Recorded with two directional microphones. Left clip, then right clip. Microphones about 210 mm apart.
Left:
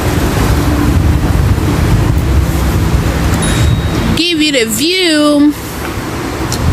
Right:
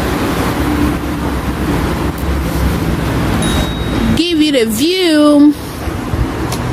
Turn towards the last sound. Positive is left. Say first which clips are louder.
# even
turn(degrees=-15)  # may be behind; listen again after turning